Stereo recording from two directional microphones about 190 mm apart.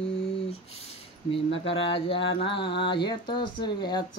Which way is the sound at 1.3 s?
30° left (ahead or behind).